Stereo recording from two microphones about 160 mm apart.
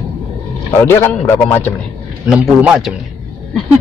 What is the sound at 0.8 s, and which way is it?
Speech, 15° left (ahead or behind).